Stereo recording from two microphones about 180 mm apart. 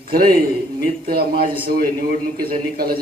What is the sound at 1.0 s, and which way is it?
A man's voice, 55° right (ahead or behind).